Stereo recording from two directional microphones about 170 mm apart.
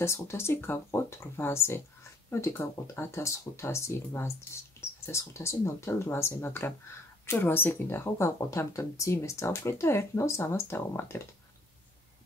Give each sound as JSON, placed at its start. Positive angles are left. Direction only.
{"t": 0.0, "sound": "speech", "side_deg": 15}